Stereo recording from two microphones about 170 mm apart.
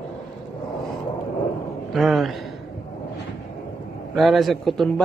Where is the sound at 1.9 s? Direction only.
Centre (ahead or behind).